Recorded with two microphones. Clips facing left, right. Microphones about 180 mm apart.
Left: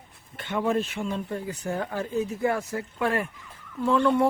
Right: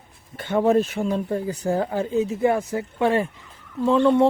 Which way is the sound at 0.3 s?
40° right (ahead or behind).